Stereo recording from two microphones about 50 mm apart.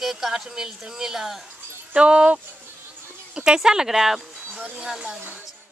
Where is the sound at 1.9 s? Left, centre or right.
Right.